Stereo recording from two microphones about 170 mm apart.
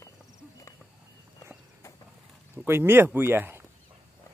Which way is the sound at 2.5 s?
15° right (ahead or behind).